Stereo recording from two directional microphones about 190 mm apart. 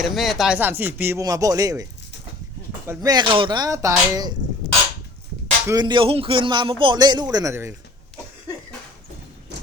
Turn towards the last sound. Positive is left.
turn(degrees=-15)  # may be behind; listen again after turning